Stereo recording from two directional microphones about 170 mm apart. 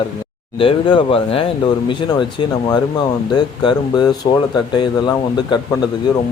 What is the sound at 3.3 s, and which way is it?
A man's voice, 25° left (ahead or behind).